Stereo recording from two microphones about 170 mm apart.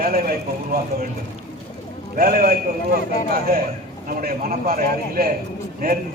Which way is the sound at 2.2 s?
60° right (ahead or behind).